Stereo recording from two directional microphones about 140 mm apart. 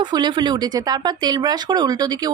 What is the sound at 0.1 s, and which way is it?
Speech, 30° right (ahead or behind).